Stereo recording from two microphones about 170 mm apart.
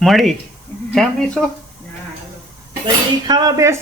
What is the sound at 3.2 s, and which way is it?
Cutlery, 25° right (ahead or behind).